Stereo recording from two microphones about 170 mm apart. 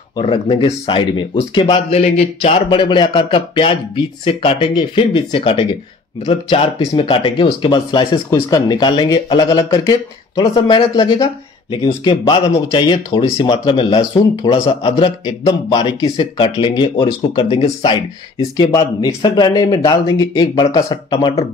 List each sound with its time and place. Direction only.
0.1 s speech: 30° left (ahead or behind)